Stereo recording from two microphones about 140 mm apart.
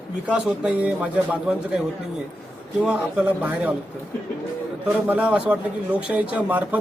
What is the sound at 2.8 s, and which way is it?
Speech, 10° right (ahead or behind).